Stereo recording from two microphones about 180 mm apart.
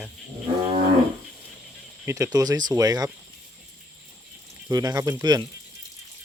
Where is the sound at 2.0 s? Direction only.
15° right (ahead or behind).